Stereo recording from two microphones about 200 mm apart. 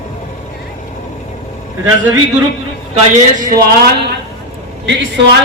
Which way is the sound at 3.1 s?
40° right (ahead or behind).